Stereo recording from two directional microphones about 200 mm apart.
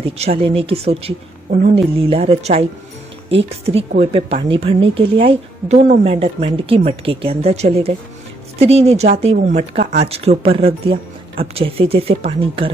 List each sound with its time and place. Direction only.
0.2 s speech: 30° right (ahead or behind)